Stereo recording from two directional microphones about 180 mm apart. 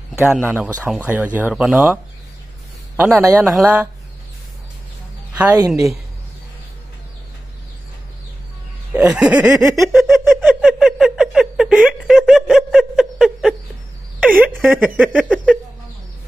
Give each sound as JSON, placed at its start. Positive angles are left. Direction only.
{"t": 0.4, "sound": "speech", "side_deg": -10}
{"t": 3.0, "sound": "speech", "side_deg": -15}
{"t": 5.4, "sound": "speech", "side_deg": -10}
{"t": 8.9, "sound": "snicker", "side_deg": -5}
{"t": 10.1, "sound": "a sound", "side_deg": -10}
{"t": 14.2, "sound": "speech", "side_deg": -10}
{"t": 15.3, "sound": "a sound", "side_deg": -5}